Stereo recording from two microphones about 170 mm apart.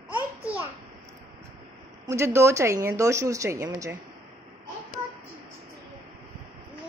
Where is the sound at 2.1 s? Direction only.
15° right (ahead or behind).